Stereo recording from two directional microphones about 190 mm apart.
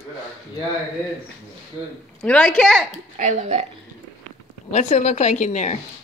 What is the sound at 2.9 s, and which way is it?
Speech, 40° right (ahead or behind).